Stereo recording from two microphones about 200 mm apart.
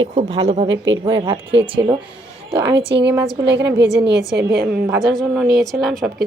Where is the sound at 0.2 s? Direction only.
30° right (ahead or behind).